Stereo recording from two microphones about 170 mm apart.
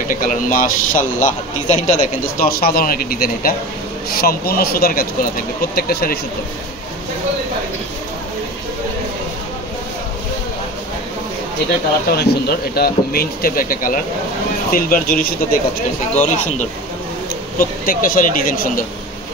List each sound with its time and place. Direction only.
0.1 s a man's voice: 55° left (ahead or behind)
12.1 s a man's voice: 70° left (ahead or behind)
16.2 s speech: 45° left (ahead or behind)
17.6 s a man's voice: 55° left (ahead or behind)